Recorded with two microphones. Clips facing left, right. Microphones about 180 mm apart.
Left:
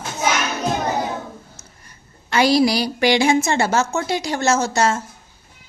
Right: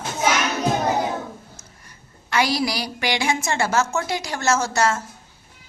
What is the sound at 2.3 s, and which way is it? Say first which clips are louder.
A woman's voice: left 6 dB; 25° left (ahead or behind).